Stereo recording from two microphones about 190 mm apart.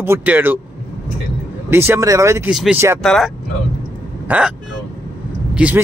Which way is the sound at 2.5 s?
Centre (ahead or behind).